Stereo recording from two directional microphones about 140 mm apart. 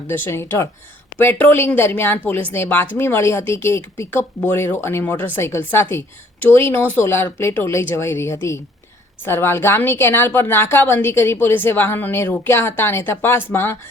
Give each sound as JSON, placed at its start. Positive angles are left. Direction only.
{"t": 0.1, "sound": "a woman's voice", "side_deg": 15}